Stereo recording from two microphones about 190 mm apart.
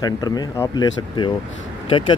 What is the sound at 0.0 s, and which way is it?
Speech, 20° left (ahead or behind).